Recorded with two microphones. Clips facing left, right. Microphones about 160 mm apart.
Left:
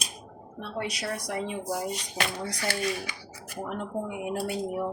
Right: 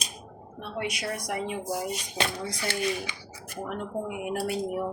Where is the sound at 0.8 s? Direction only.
35° left (ahead or behind).